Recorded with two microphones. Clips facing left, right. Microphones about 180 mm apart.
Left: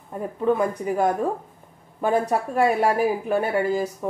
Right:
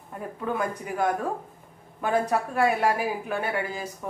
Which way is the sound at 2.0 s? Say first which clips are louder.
Left 3 dB; 35° left (ahead or behind).